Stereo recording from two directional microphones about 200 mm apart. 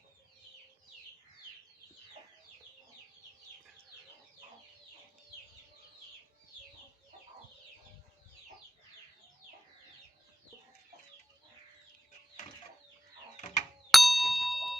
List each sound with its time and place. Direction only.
13.3 s mechanisms: 35° left (ahead or behind)
13.9 s ding: centre (ahead or behind)